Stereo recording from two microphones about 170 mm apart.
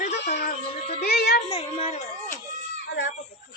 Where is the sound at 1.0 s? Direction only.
65° left (ahead or behind).